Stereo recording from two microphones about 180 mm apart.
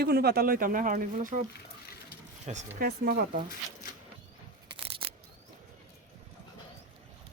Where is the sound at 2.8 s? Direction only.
55° right (ahead or behind).